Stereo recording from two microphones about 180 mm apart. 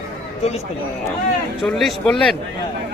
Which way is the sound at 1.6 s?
Centre (ahead or behind).